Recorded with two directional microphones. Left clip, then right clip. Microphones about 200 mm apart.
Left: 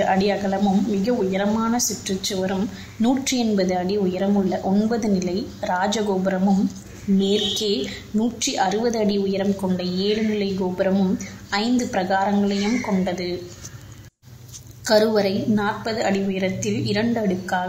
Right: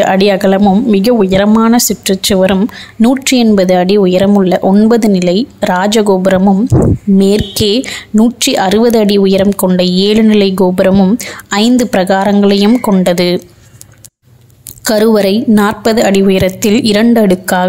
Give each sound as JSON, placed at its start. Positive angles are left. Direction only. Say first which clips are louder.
{"t": 0.0, "sound": "a woman's voice", "louder": "right 12 dB", "side_deg": -50}
{"t": 14.9, "sound": "a woman's voice", "louder": "right 9 dB", "side_deg": -45}